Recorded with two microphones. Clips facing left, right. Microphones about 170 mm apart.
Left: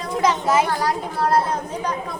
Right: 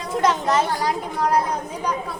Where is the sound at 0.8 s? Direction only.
15° right (ahead or behind).